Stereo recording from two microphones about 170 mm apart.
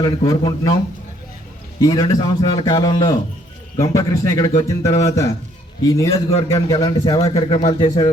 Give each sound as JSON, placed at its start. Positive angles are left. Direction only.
{"t": 0.0, "sound": "speech", "side_deg": 25}
{"t": 1.8, "sound": "a man's voice", "side_deg": 20}
{"t": 7.2, "sound": "speech", "side_deg": 35}
{"t": 7.9, "sound": "speech", "side_deg": 25}